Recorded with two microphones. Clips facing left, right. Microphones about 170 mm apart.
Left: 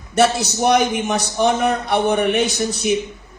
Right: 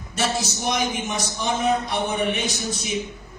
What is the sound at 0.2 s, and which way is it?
A woman's voice, 65° left (ahead or behind).